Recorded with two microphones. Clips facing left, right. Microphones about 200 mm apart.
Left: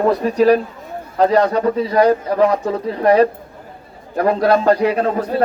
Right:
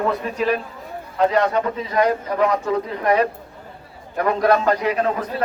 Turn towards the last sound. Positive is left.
turn(degrees=35)  # may be behind; listen again after turning